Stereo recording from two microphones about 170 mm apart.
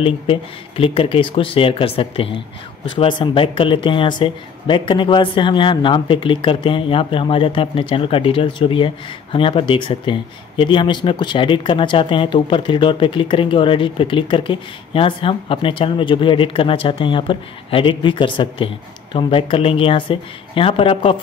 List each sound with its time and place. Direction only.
0.0 s speech: 35° left (ahead or behind)